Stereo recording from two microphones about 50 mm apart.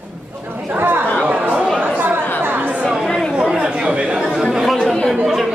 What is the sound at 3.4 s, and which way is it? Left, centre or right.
Chatter, centre.